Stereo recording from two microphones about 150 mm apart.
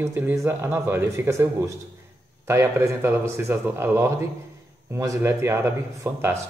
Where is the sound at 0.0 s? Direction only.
15° right (ahead or behind).